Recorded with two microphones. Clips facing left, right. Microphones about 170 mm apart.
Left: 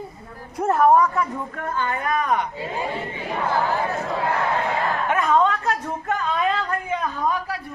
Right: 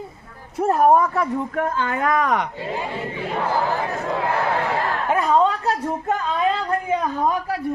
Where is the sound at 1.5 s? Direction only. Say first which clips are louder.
Right 1 dB; 85° right.